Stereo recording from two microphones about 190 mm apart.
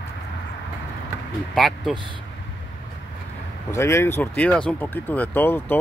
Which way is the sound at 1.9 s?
25° right (ahead or behind).